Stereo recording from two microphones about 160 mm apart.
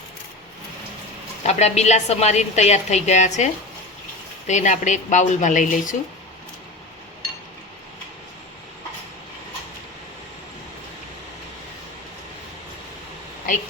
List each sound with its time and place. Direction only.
1.5 s a woman's voice: 45° left (ahead or behind)